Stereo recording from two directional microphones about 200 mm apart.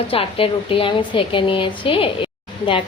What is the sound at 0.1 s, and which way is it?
A woman's voice, 30° left (ahead or behind).